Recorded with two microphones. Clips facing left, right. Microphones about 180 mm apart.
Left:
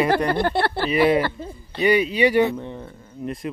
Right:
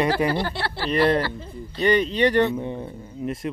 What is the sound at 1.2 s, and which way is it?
Speech, 50° left (ahead or behind).